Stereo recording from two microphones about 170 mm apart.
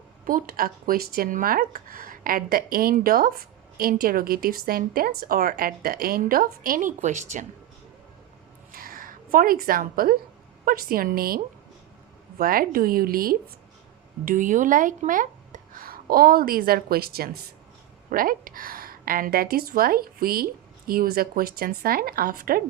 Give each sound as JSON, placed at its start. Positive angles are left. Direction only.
{"t": 0.3, "sound": "speech", "side_deg": -55}
{"t": 8.7, "sound": "a sound", "side_deg": -60}
{"t": 10.7, "sound": "speech", "side_deg": -60}